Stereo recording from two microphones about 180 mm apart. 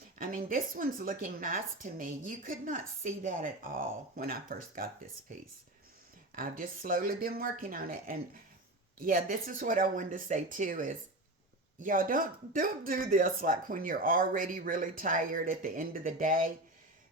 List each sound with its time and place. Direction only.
0.2 s a woman's voice: 50° right (ahead or behind)
6.3 s a woman's voice: 50° right (ahead or behind)